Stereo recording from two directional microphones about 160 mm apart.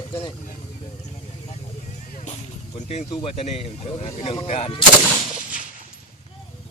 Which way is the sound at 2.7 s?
45° left (ahead or behind).